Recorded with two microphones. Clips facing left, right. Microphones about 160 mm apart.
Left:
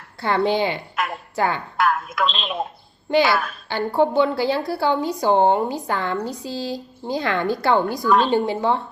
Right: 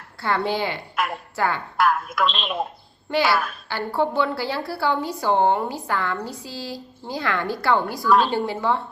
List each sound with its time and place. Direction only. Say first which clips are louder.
0.2 s a woman's voice: left 4 dB; 20° left (ahead or behind)
1.0 s a sound: right 1 dB; centre (ahead or behind)
1.4 s a woman's voice: left 2 dB; 20° left (ahead or behind)
1.8 s a woman's voice: even; centre (ahead or behind)
3.7 s a woman's voice: left 5 dB; 20° left (ahead or behind)